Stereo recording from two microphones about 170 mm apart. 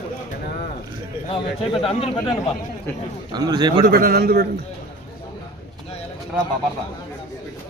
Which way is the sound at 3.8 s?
60° right (ahead or behind).